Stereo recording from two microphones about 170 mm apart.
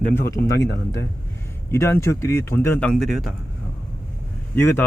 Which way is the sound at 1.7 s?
15° left (ahead or behind).